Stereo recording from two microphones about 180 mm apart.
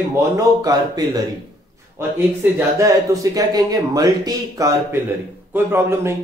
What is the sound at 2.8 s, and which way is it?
Speech, 20° right (ahead or behind).